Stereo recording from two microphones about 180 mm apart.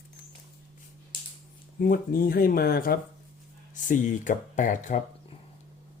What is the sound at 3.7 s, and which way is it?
Speech, 45° left (ahead or behind).